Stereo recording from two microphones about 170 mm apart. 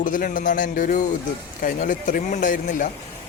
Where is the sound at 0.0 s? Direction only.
50° left (ahead or behind).